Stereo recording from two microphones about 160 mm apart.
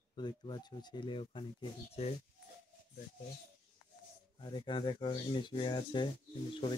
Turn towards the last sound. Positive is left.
turn(degrees=30)  # may be behind; listen again after turning